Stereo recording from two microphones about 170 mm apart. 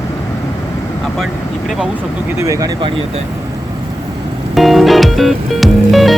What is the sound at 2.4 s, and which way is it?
Speech, 20° right (ahead or behind).